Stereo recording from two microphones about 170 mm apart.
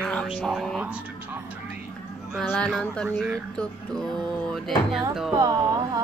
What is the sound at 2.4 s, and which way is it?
Speech, 10° left (ahead or behind).